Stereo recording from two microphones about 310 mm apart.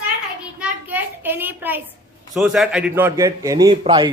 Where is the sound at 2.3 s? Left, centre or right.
Centre.